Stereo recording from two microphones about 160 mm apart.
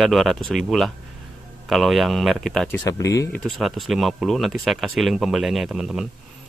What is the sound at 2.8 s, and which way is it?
Speech, 20° left (ahead or behind).